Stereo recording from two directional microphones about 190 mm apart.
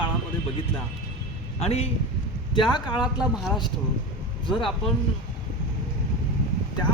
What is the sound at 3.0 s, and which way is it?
Speech, 5° right (ahead or behind).